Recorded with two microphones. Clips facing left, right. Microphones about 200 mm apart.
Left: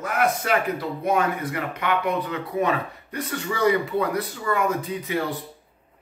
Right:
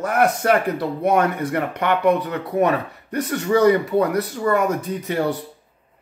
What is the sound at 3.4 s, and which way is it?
Speech, 40° right (ahead or behind).